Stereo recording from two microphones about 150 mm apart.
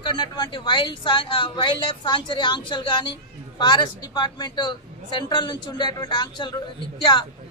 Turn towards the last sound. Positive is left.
turn(degrees=30)  # may be behind; listen again after turning